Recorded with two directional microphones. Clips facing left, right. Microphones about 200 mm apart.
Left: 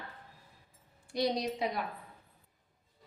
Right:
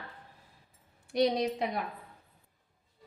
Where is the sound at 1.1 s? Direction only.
60° right (ahead or behind).